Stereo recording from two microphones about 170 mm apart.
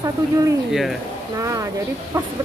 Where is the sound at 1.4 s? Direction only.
20° right (ahead or behind).